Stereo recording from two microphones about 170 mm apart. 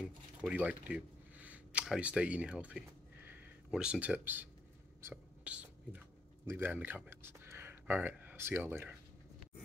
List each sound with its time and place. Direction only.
0.4 s speech: 5° right (ahead or behind)
5.0 s whispering: 10° right (ahead or behind)